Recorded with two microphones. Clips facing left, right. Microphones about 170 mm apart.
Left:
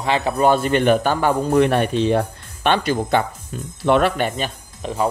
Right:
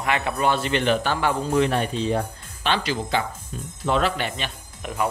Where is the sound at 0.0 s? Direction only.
30° left (ahead or behind); by 4.3 s 60° left (ahead or behind).